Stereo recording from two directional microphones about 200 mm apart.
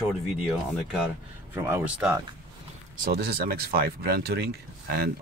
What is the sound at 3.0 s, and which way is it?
Speech, 50° right (ahead or behind).